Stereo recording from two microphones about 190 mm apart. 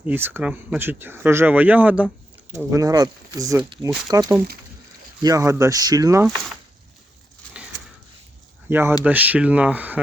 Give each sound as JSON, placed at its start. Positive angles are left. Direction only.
{"t": 0.0, "sound": "speech", "side_deg": -10}
{"t": 7.4, "sound": "a sound", "side_deg": 5}
{"t": 8.7, "sound": "speech", "side_deg": -10}